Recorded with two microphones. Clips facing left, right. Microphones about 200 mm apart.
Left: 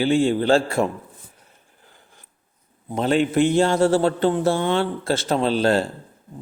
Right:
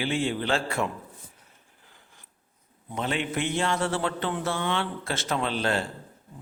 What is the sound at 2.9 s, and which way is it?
A man's voice, 35° left (ahead or behind).